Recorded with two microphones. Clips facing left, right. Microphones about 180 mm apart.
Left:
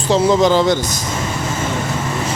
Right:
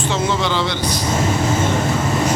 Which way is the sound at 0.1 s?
35° left (ahead or behind).